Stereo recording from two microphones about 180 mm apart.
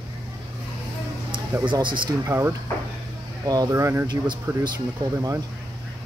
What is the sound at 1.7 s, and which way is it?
Speech, 25° right (ahead or behind).